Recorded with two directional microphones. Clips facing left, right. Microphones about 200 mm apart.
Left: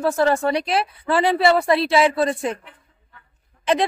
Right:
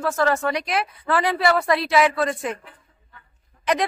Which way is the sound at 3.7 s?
25° left (ahead or behind).